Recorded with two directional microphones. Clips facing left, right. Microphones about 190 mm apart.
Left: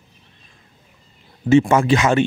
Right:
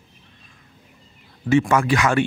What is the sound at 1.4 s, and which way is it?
Speech, 25° left (ahead or behind).